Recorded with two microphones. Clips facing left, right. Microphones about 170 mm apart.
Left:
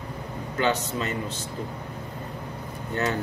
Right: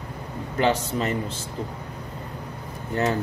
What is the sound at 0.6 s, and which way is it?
Speech, 30° right (ahead or behind).